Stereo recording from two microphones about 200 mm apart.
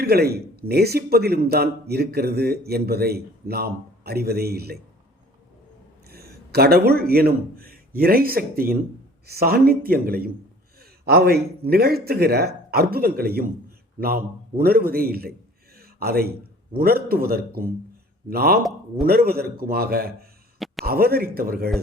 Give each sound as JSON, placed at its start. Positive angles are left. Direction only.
{"t": 0.0, "sound": "a man's voice", "side_deg": -50}
{"t": 6.1, "sound": "a man's voice", "side_deg": -50}
{"t": 15.8, "sound": "a sound", "side_deg": -50}
{"t": 16.7, "sound": "a man's voice", "side_deg": -50}